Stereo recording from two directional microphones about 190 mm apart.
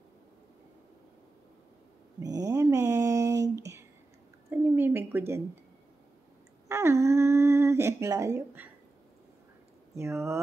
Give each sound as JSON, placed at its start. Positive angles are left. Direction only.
{"t": 2.2, "sound": "mantra", "side_deg": -20}
{"t": 3.4, "sound": "a sound", "side_deg": -15}
{"t": 6.7, "sound": "humming", "side_deg": -15}
{"t": 9.9, "sound": "speech", "side_deg": -15}